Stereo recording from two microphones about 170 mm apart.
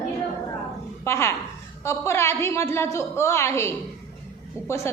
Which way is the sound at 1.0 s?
15° left (ahead or behind).